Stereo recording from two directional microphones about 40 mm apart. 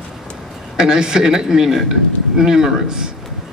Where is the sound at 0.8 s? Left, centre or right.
Centre.